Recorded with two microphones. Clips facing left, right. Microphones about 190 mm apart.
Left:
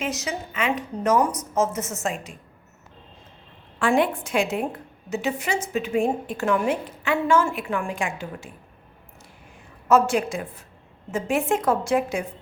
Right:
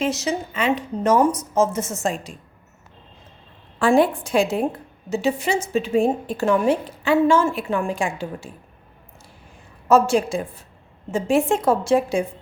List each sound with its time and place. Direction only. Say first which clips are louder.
0.0 s a woman's voice: right 6 dB; 30° right (ahead or behind)
3.8 s a woman's voice: right 4 dB; 35° right (ahead or behind)
9.9 s a woman's voice: right 3 dB; 30° right (ahead or behind)